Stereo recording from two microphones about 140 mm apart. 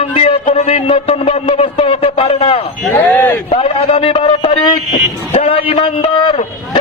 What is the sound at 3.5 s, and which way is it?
A man's voice, 45° left (ahead or behind).